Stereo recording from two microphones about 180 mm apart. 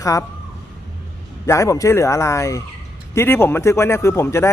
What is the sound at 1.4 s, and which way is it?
A man's voice, 15° left (ahead or behind).